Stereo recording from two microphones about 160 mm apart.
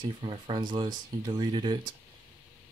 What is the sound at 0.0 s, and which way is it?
Speech, 30° right (ahead or behind).